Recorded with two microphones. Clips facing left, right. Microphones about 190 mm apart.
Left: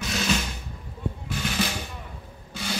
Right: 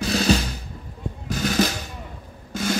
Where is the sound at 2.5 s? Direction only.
45° right (ahead or behind).